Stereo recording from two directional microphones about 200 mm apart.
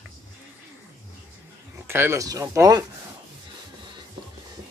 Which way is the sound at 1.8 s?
10° right (ahead or behind).